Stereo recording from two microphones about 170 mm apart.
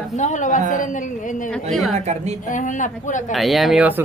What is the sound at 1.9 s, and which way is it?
Speech, 40° right (ahead or behind).